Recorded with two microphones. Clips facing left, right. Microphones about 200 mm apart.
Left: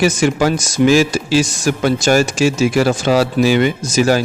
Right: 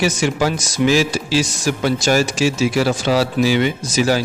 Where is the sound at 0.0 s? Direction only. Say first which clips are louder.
Left 4 dB; 50° left (ahead or behind).